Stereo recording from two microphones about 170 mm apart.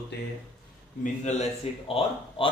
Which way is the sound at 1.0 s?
40° left (ahead or behind).